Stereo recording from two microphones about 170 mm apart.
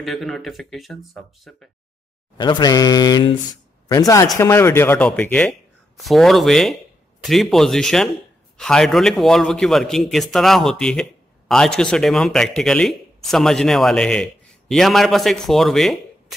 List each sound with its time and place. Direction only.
0.0 s a man's voice: centre (ahead or behind)
2.3 s a man's voice: 25° left (ahead or behind); by 16.3 s centre (ahead or behind)